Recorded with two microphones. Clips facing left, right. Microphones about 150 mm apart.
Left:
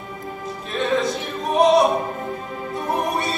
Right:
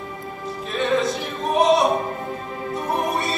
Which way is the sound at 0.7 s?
Centre (ahead or behind).